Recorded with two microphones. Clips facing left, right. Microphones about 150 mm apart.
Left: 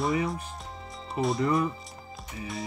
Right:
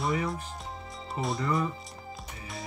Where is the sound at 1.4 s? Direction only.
25° left (ahead or behind).